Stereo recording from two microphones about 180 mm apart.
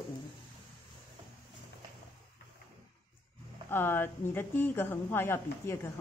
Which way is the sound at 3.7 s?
10° left (ahead or behind).